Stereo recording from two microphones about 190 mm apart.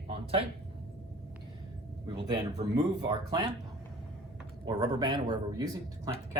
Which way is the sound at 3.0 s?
25° right (ahead or behind).